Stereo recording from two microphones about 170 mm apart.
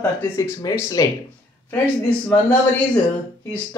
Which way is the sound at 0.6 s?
20° left (ahead or behind).